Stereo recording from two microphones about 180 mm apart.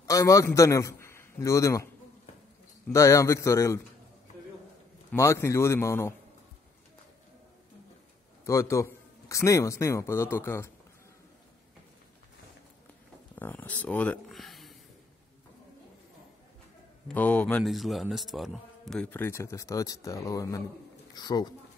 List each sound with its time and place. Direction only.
0.0 s a man's voice: 15° left (ahead or behind)
2.9 s speech: 15° left (ahead or behind)
5.1 s speech: 15° left (ahead or behind)
8.5 s speech: 15° left (ahead or behind)
13.4 s speech: 10° left (ahead or behind)
17.1 s speech: 10° left (ahead or behind)